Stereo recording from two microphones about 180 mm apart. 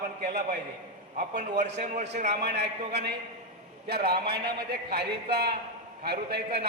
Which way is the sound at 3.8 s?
65° right (ahead or behind).